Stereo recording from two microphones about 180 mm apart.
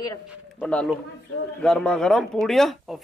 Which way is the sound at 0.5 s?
5° left (ahead or behind).